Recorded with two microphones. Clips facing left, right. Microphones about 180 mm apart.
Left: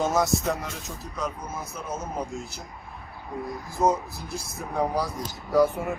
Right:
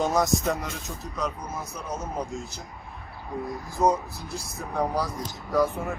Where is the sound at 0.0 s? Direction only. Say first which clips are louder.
Even; 5° left (ahead or behind).